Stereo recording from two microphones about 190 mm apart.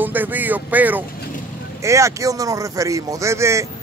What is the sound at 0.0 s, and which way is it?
Speech, 10° right (ahead or behind).